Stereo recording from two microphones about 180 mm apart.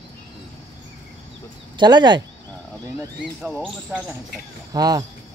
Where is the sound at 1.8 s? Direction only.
25° right (ahead or behind).